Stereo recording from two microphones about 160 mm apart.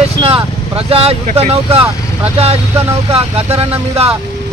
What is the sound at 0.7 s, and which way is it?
Speech, 40° right (ahead or behind).